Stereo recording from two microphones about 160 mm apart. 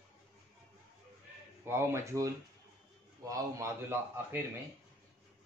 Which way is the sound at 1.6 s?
15° right (ahead or behind).